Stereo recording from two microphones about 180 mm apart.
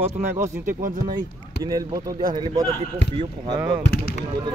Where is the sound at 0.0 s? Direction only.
10° right (ahead or behind).